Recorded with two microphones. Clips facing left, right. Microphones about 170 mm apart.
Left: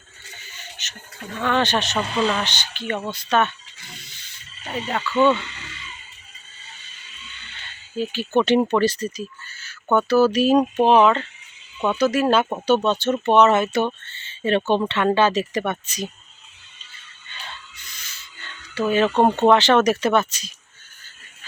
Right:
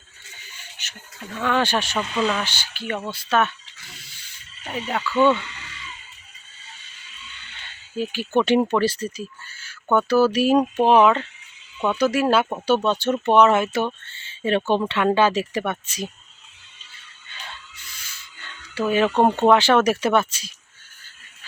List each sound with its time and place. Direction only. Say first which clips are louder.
0.5 s a sound: left 3 dB; 10° right (ahead or behind)
1.4 s speech: left 1 dB; 10° right (ahead or behind)
2.0 s speech: left 2 dB; 35° left (ahead or behind)
2.2 s speech: left 1 dB; 5° right (ahead or behind)
4.0 s snake: left 2 dB; 10° right (ahead or behind)
7.9 s speech: left 1 dB; 10° right (ahead or behind)
18.7 s speech: left 1 dB; 10° right (ahead or behind)